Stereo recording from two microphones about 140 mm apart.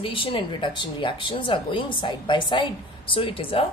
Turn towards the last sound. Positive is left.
turn(degrees=40)  # may be behind; listen again after turning